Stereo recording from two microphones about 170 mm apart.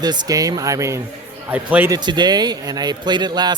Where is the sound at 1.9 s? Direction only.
25° right (ahead or behind).